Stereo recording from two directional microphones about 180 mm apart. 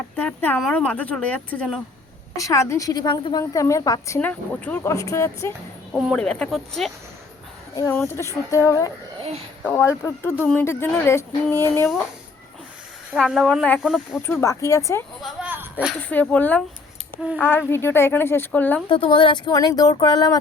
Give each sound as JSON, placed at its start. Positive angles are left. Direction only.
{"t": 0.2, "sound": "speech", "side_deg": 10}
{"t": 5.9, "sound": "speech", "side_deg": 0}
{"t": 13.1, "sound": "speech", "side_deg": 0}
{"t": 14.2, "sound": "speech", "side_deg": 15}
{"t": 15.2, "sound": "a sound", "side_deg": -5}
{"t": 16.0, "sound": "speech", "side_deg": 10}
{"t": 18.9, "sound": "speech", "side_deg": 25}